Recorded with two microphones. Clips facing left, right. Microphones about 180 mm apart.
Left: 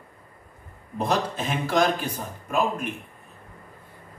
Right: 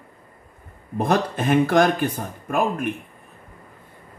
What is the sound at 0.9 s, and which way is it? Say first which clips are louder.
Speech: right 4 dB; 55° right (ahead or behind).